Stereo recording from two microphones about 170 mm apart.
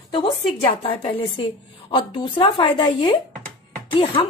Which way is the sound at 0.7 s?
30° left (ahead or behind).